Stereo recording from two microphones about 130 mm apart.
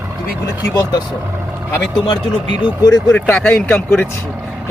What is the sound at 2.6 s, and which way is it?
Speech, 30° left (ahead or behind).